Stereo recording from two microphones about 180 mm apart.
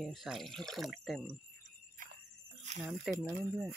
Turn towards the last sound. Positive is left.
turn(degrees=0)  # may be behind; listen again after turning